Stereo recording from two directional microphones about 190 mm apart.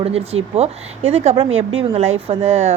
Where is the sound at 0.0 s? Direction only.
30° right (ahead or behind).